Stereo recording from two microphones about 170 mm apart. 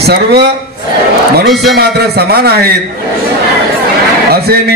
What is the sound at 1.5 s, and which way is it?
Music, centre (ahead or behind).